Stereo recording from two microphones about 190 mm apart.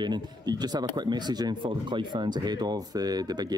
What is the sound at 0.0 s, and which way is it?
Speech, 20° right (ahead or behind).